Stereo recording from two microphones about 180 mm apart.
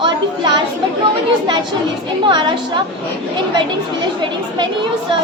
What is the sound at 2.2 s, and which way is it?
Speech, 25° right (ahead or behind).